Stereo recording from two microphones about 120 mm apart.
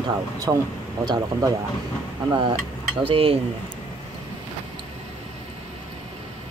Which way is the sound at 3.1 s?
50° right (ahead or behind).